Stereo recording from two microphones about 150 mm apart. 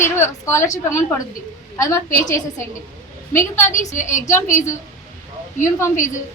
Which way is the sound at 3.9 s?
55° left (ahead or behind).